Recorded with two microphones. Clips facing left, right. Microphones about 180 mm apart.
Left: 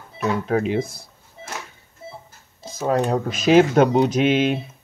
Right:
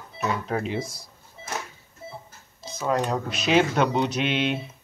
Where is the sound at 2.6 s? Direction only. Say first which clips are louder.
Left 4 dB; 50° left (ahead or behind).